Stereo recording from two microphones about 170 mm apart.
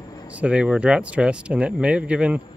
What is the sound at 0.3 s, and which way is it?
Speech, 5° right (ahead or behind).